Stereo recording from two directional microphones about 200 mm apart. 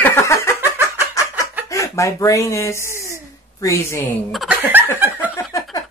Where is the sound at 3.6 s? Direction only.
15° left (ahead or behind).